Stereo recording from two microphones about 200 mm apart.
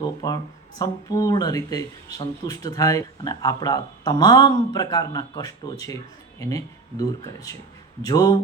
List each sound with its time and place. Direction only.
0.2 s speech: 20° left (ahead or behind)